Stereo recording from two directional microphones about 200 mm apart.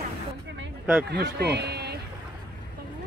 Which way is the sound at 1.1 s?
55° right (ahead or behind).